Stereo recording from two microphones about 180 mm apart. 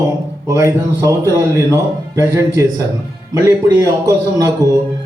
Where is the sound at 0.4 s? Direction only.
15° right (ahead or behind).